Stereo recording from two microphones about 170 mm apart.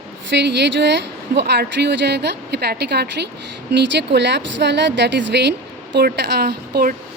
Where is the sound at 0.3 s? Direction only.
90° right; by 3.2 s 75° right (ahead or behind).